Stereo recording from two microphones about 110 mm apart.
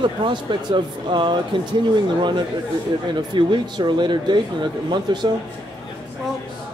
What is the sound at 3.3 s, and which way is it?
Speech, 45° right (ahead or behind).